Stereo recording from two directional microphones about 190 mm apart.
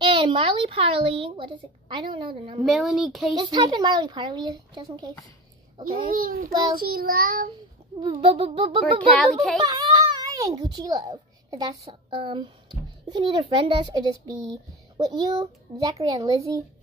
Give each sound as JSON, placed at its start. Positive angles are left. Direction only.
{"t": 0.0, "sound": "a child's voice", "side_deg": -25}
{"t": 2.6, "sound": "speech", "side_deg": 0}
{"t": 3.3, "sound": "a child's voice", "side_deg": -25}
{"t": 6.1, "sound": "child singing", "side_deg": -50}
{"t": 8.0, "sound": "a child's voice", "side_deg": -25}
{"t": 9.1, "sound": "speech", "side_deg": 5}
{"t": 9.7, "sound": "a child's voice", "side_deg": -20}